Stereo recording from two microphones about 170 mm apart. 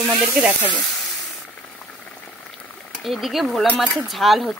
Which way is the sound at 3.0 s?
Centre (ahead or behind).